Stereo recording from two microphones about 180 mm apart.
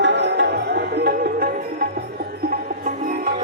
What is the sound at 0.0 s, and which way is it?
Music, 75° right (ahead or behind).